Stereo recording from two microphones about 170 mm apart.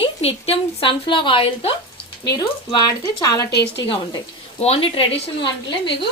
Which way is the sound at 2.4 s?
20° left (ahead or behind).